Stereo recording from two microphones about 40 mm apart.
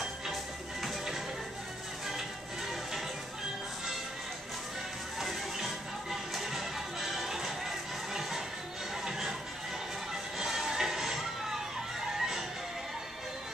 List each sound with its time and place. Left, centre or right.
0.8 s music: centre
5.2 s music: centre
10.4 s music: centre